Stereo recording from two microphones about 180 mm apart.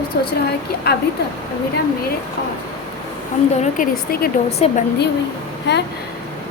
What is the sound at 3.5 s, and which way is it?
A woman's voice, 40° left (ahead or behind).